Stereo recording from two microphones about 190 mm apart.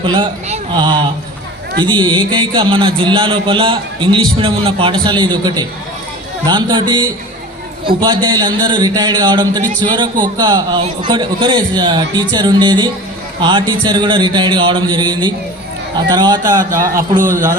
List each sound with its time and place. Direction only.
0.0 s speech: 25° right (ahead or behind)
16.6 s a man's voice: 45° right (ahead or behind)